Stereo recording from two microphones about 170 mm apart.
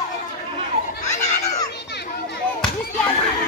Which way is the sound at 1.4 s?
20° left (ahead or behind).